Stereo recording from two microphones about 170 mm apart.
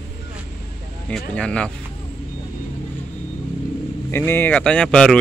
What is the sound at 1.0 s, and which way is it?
Speech, 5° left (ahead or behind).